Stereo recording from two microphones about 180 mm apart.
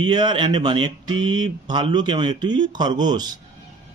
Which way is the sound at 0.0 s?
25° right (ahead or behind).